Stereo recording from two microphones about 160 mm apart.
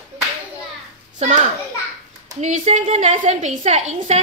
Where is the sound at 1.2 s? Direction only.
45° right (ahead or behind).